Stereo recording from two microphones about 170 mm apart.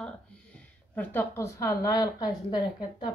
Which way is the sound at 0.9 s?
10° left (ahead or behind).